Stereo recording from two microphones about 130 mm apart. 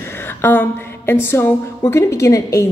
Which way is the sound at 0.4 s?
15° left (ahead or behind).